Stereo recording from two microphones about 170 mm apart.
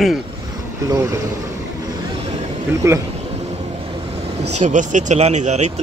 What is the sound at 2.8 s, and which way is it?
Speech, 15° right (ahead or behind).